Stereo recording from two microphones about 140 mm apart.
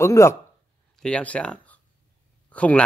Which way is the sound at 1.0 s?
10° left (ahead or behind).